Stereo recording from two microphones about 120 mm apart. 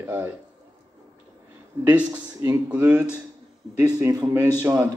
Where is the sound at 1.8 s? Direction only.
10° right (ahead or behind).